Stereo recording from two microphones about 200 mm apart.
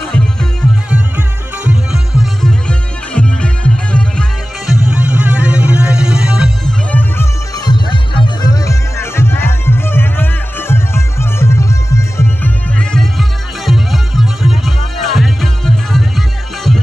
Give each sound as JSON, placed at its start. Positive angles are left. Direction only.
{"t": 0.1, "sound": "music", "side_deg": 5}
{"t": 2.4, "sound": "music", "side_deg": 5}
{"t": 6.9, "sound": "music", "side_deg": 10}